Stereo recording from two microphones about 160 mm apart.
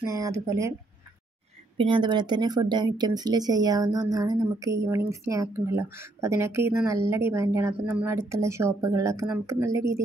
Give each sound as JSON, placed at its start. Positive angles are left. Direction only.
{"t": 0.0, "sound": "speech", "side_deg": -20}
{"t": 1.8, "sound": "speech", "side_deg": -30}